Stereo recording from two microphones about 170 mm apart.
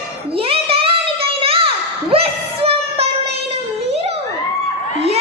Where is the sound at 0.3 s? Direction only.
35° right (ahead or behind).